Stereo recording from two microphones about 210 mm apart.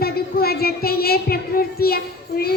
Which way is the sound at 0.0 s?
45° left (ahead or behind).